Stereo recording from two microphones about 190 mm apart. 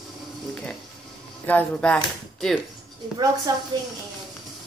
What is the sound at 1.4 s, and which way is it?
Speech, 10° left (ahead or behind).